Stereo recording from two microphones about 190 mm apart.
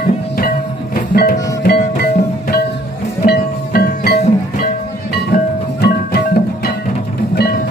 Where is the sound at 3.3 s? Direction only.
55° left (ahead or behind).